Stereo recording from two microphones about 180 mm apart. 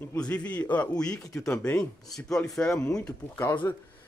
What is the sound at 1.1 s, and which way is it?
Speech, 20° left (ahead or behind).